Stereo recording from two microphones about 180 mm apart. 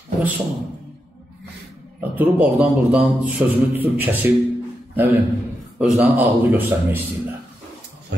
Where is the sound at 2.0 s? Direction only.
10° right (ahead or behind).